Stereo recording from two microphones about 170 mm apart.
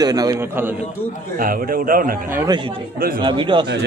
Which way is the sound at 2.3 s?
15° right (ahead or behind).